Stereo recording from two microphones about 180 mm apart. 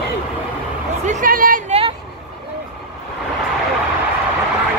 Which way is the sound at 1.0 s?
50° right (ahead or behind).